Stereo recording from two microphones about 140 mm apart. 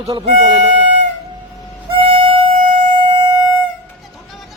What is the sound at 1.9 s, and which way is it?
Music, 40° right (ahead or behind).